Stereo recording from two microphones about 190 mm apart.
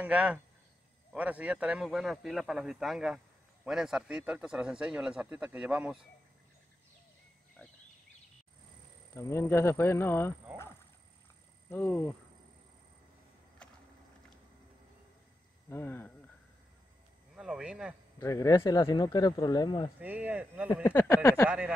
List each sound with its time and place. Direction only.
0.0 s speech: 5° right (ahead or behind)
9.1 s speech: 15° left (ahead or behind)
13.6 s vehicle: 5° left (ahead or behind)
15.7 s speech: 10° left (ahead or behind)
17.4 s speech: 5° right (ahead or behind)
18.2 s speech: 15° left (ahead or behind)
20.0 s speech: 10° right (ahead or behind)
20.8 s speech: 15° left (ahead or behind)
21.5 s speech: 5° right (ahead or behind)